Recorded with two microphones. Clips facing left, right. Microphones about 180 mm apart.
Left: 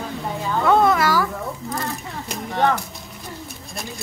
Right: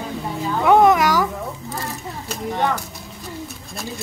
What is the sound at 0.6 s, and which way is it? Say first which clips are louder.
Speech: right 3 dB; 15° right (ahead or behind).